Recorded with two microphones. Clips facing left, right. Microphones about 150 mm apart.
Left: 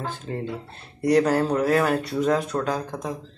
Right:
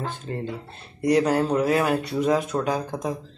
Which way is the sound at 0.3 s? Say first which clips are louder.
Even; centre (ahead or behind).